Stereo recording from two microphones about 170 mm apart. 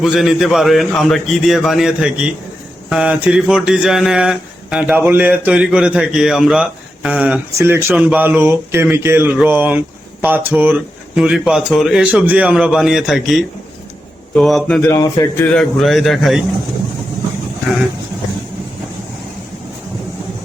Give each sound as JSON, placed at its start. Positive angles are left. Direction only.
{"t": 0.0, "sound": "a man's voice", "side_deg": 0}
{"t": 14.8, "sound": "speech", "side_deg": 20}
{"t": 15.5, "sound": "a man's voice", "side_deg": 0}